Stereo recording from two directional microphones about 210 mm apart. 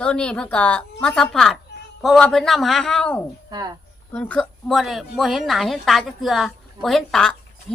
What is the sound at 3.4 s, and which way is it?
Speech, 20° right (ahead or behind).